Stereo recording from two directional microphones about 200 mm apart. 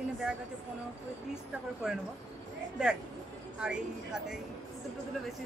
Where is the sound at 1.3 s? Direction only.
5° right (ahead or behind).